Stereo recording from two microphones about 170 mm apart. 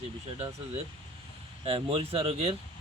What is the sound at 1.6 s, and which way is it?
Speech, 35° right (ahead or behind).